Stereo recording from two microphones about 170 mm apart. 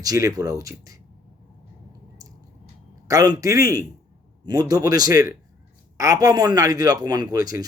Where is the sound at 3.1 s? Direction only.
20° right (ahead or behind).